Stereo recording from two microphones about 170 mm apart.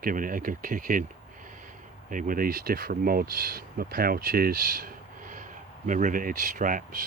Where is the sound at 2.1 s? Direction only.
50° right (ahead or behind).